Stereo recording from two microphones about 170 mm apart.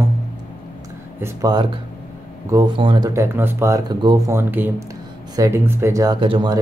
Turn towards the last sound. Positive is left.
turn(degrees=-30)  # may be behind; listen again after turning